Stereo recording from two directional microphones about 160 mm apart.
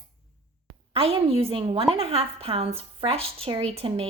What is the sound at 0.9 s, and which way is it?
A woman's voice, 35° right (ahead or behind).